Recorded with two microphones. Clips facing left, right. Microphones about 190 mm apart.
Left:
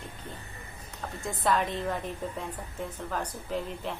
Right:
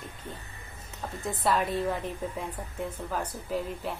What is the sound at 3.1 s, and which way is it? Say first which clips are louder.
Speech: even; 5° right (ahead or behind).